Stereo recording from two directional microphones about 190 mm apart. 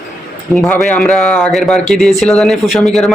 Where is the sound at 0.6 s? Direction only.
5° left (ahead or behind).